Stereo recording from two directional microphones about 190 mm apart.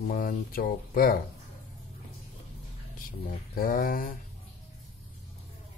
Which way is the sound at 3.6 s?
50° left (ahead or behind).